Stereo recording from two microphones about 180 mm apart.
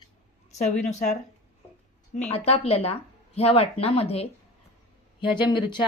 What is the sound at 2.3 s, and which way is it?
Speech, 35° left (ahead or behind).